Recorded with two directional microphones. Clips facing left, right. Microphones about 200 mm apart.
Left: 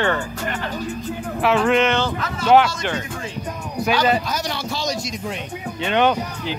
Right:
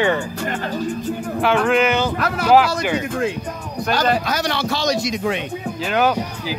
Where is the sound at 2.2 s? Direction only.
65° right (ahead or behind).